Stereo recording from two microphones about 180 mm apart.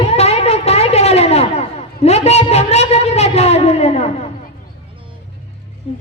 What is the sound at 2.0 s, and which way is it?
Speech, 35° left (ahead or behind).